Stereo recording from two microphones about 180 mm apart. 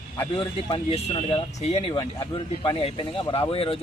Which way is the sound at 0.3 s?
30° left (ahead or behind).